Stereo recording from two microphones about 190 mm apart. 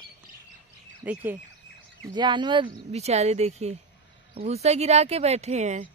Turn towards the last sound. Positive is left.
turn(degrees=-40)  # may be behind; listen again after turning